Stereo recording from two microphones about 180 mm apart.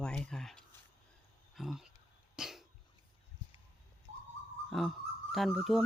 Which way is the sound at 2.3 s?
Centre (ahead or behind).